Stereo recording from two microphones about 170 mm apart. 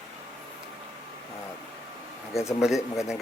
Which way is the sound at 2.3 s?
15° left (ahead or behind).